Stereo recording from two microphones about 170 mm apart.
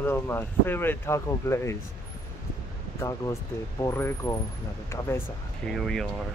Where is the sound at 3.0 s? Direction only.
15° left (ahead or behind).